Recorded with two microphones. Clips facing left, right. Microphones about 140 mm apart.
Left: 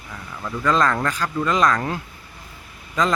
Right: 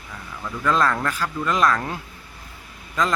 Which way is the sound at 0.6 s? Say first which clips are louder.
Left 1 dB; 5° right (ahead or behind).